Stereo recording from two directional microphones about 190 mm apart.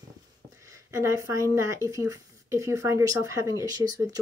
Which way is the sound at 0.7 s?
15° right (ahead or behind).